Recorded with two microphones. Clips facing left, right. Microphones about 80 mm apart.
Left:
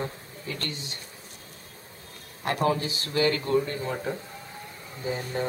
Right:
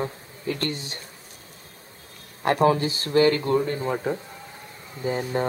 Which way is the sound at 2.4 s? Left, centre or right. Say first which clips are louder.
Right 6 dB; right.